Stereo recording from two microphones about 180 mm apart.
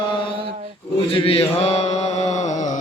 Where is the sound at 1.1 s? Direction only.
30° left (ahead or behind).